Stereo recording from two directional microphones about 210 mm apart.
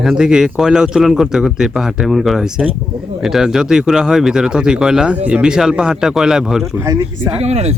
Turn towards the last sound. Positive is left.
turn(degrees=-30)  # may be behind; listen again after turning